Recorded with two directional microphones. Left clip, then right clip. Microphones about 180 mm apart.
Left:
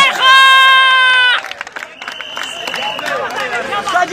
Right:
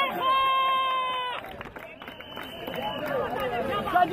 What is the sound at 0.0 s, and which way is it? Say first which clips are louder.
Run: left 17 dB; 35° left (ahead or behind).